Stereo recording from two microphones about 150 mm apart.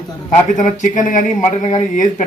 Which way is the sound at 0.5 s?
55° left (ahead or behind).